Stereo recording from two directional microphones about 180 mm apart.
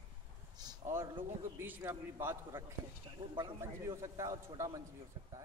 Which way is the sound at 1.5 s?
10° right (ahead or behind).